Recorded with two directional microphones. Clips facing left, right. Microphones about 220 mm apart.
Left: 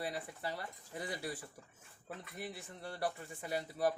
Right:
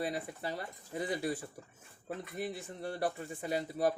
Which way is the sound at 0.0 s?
20° right (ahead or behind).